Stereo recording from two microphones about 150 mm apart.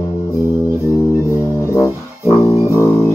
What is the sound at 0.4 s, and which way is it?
Music, 20° right (ahead or behind).